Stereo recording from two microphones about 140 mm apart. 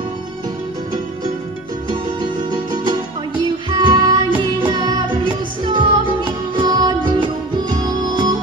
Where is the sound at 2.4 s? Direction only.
30° right (ahead or behind).